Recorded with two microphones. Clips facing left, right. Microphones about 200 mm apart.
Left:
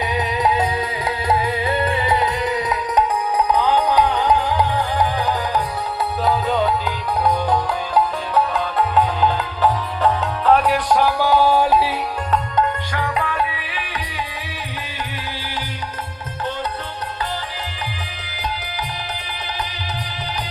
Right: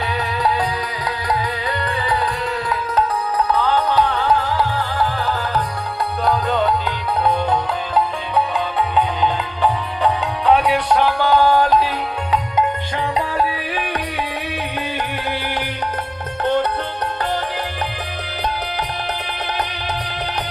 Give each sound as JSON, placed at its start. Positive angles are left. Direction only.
{"t": 0.1, "sound": "music", "side_deg": 20}
{"t": 6.2, "sound": "music", "side_deg": 0}
{"t": 13.0, "sound": "music", "side_deg": -30}
{"t": 13.7, "sound": "music", "side_deg": -55}